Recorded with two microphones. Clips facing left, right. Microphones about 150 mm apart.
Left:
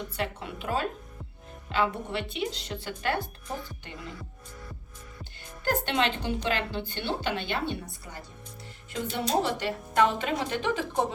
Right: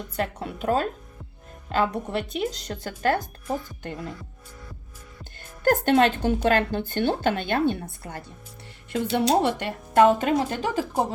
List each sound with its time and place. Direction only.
0.2 s a woman's voice: 40° right (ahead or behind)
5.6 s a woman's voice: 45° right (ahead or behind)